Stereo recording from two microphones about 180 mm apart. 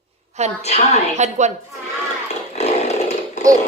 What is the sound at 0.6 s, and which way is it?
Speech, 35° left (ahead or behind).